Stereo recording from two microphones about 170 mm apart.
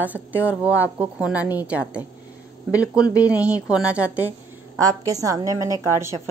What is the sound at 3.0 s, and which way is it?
Speech, 20° left (ahead or behind).